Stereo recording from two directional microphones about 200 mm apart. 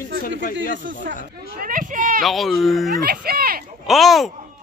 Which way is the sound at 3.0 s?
50° right (ahead or behind).